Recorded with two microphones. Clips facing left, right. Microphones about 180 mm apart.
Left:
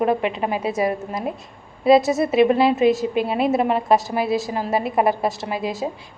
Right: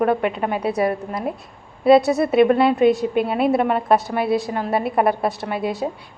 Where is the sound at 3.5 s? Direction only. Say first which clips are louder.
Right 1 dB; 25° left (ahead or behind).